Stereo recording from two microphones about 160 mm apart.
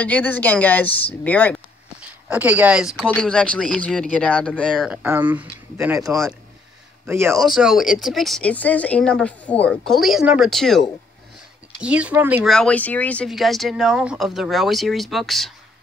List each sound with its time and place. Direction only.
0.0 s speech: 10° left (ahead or behind)
2.0 s speech: 10° right (ahead or behind); by 4.8 s 5° left (ahead or behind)
4.8 s speech: 10° right (ahead or behind)
7.3 s speech: centre (ahead or behind)
12.4 s speech: 5° left (ahead or behind)